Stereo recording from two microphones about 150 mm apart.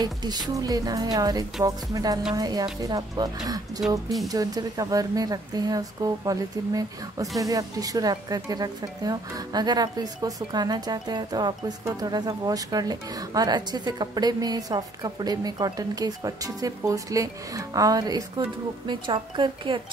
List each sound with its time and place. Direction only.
0.0 s speech: 30° right (ahead or behind)